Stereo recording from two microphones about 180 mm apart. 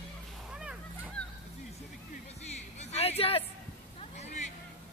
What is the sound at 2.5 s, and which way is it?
Music, 35° left (ahead or behind).